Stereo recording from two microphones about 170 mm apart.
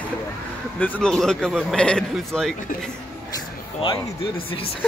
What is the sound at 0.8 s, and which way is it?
Speech, 5° left (ahead or behind).